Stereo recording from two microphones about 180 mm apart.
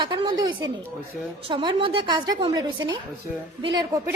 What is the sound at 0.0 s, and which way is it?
A woman's voice, 25° right (ahead or behind).